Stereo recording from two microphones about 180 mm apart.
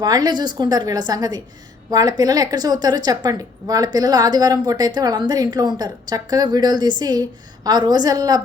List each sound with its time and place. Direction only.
0.0 s a woman's voice: 25° right (ahead or behind)